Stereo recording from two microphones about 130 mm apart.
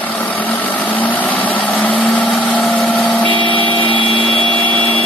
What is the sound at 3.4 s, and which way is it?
Vehicle, 40° left (ahead or behind).